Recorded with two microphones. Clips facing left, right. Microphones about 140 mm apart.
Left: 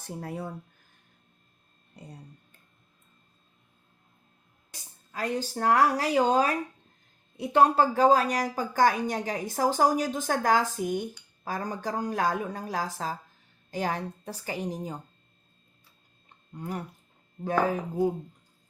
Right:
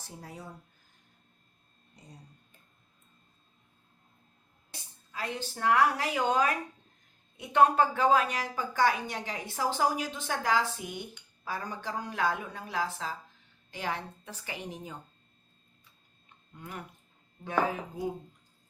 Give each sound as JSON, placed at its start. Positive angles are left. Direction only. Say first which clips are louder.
{"t": 0.0, "sound": "speech", "louder": "left 9 dB", "side_deg": 60}
{"t": 2.0, "sound": "speech", "louder": "left 8 dB", "side_deg": 60}
{"t": 4.7, "sound": "a woman's voice", "louder": "left 2 dB", "side_deg": 40}
{"t": 16.6, "sound": "a woman's voice", "louder": "left 8 dB", "side_deg": 35}